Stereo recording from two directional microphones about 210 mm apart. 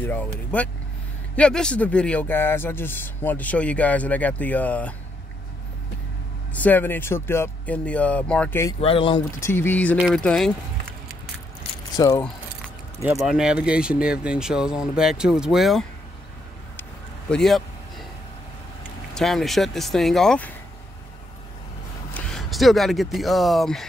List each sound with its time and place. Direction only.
0.0 s speech: 10° left (ahead or behind)
6.5 s speech: 10° left (ahead or behind)
8.7 s speech: 25° left (ahead or behind)
9.4 s speech: 10° left (ahead or behind)
12.0 s speech: 15° left (ahead or behind)
13.3 s speech: 5° right (ahead or behind)
17.3 s vehicle: centre (ahead or behind)
19.1 s speech: centre (ahead or behind)
22.1 s speech: centre (ahead or behind)